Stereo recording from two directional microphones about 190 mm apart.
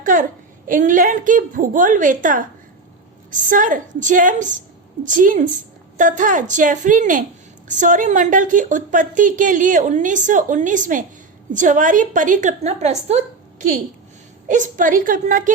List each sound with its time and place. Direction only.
0.0 s a woman's voice: 45° right (ahead or behind)